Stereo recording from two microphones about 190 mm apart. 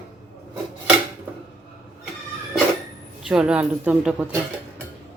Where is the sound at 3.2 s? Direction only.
5° right (ahead or behind).